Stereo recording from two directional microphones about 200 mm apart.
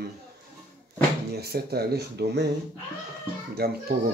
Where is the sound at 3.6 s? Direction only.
50° right (ahead or behind).